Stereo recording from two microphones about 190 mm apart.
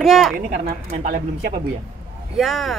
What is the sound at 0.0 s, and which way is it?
Speech, centre (ahead or behind).